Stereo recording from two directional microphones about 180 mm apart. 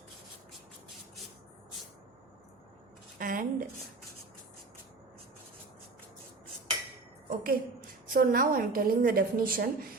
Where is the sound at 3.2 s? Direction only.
50° right (ahead or behind).